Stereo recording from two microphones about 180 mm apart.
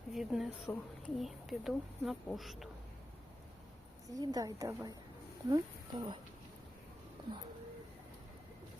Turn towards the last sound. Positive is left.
turn(degrees=-30)  # may be behind; listen again after turning